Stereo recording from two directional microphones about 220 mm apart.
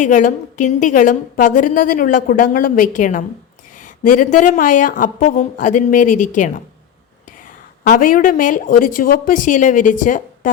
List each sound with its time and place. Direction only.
0.0 s a woman's voice: 35° left (ahead or behind)
7.9 s a woman's voice: 40° left (ahead or behind)